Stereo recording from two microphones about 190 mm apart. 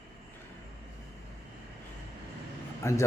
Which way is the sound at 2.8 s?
15° left (ahead or behind).